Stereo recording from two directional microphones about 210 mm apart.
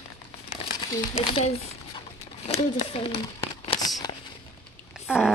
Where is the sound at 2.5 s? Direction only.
25° left (ahead or behind).